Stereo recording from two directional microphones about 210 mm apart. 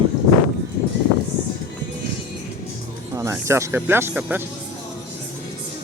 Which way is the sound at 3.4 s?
15° right (ahead or behind).